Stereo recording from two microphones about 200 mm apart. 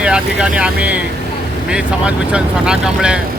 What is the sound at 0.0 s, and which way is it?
Speech, 5° right (ahead or behind).